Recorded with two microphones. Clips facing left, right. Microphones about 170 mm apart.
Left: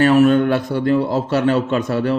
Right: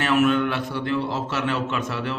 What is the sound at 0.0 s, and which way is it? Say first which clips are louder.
A man's voice: left 7 dB; 35° left (ahead or behind).